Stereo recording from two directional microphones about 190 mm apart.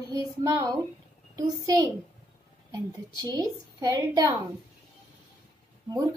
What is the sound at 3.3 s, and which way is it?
Speech, 20° right (ahead or behind).